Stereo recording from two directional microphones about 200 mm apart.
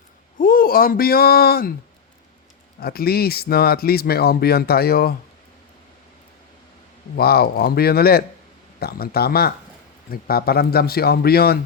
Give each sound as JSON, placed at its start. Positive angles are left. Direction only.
{"t": 0.3, "sound": "speech", "side_deg": 45}
{"t": 2.8, "sound": "speech", "side_deg": 50}
{"t": 7.2, "sound": "speech", "side_deg": 50}